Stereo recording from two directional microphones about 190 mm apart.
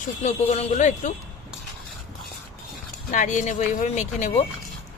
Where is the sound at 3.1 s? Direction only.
40° left (ahead or behind).